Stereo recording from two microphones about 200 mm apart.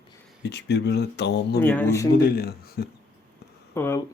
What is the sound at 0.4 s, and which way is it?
Speech, 55° left (ahead or behind).